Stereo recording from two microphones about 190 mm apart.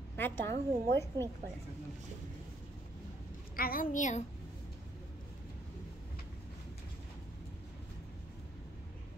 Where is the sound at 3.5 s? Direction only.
50° left (ahead or behind).